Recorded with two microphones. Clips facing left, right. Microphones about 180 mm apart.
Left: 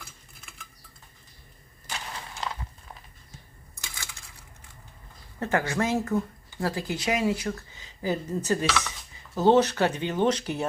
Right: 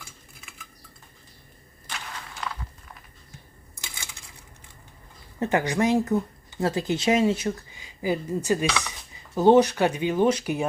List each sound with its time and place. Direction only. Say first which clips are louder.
0.0 s cutlery: right 1 dB; centre (ahead or behind)
3.8 s coin: even; 20° right (ahead or behind)
5.4 s speech: right 3 dB; 20° right (ahead or behind)